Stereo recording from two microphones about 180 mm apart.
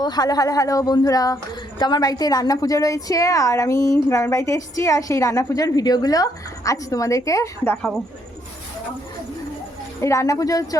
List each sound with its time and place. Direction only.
0.0 s a woman's voice: 20° left (ahead or behind); by 8.0 s 5° left (ahead or behind)
10.0 s a woman's voice: 15° left (ahead or behind)